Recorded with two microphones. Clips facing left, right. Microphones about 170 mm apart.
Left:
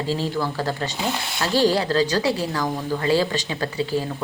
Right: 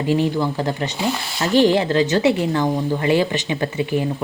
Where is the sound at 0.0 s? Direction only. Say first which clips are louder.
Right 5 dB; 20° right (ahead or behind).